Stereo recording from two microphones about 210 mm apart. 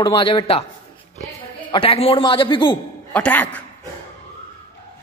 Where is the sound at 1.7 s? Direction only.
25° left (ahead or behind).